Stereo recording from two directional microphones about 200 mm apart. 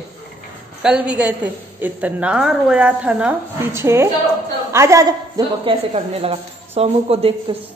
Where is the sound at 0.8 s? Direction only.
5° right (ahead or behind); by 7.5 s 30° right (ahead or behind).